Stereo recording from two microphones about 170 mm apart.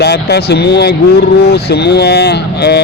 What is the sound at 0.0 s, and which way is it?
Speech, 75° left (ahead or behind).